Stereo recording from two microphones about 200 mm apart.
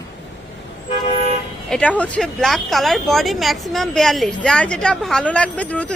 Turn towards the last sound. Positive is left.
turn(degrees=5)  # may be behind; listen again after turning